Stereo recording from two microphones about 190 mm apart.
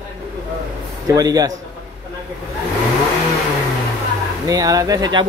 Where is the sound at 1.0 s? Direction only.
20° right (ahead or behind).